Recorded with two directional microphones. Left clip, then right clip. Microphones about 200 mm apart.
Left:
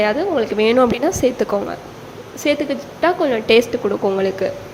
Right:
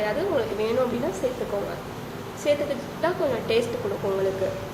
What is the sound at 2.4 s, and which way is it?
A woman's voice, 55° left (ahead or behind).